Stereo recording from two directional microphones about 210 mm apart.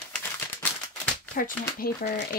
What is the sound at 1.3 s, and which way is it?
Speech, 40° left (ahead or behind).